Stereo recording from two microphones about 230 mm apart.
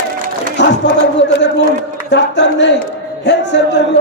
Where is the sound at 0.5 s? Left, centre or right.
Left.